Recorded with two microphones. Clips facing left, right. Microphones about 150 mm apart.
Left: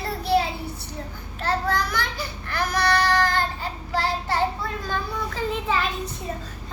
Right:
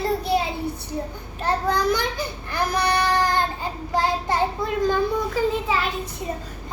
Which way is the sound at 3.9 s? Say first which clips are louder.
Right 3 dB; 15° right (ahead or behind).